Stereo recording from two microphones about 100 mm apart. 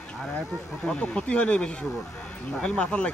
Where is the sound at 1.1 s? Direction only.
10° left (ahead or behind).